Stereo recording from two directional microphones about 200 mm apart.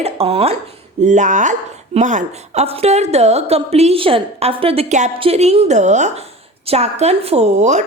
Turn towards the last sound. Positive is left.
turn(degrees=-35)  # may be behind; listen again after turning